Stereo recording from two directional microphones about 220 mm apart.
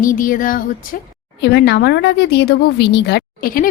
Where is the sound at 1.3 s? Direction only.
50° left (ahead or behind).